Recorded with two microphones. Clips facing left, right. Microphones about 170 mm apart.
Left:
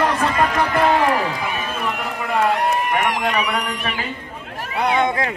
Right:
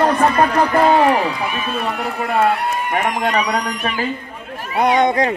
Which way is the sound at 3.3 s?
40° right (ahead or behind).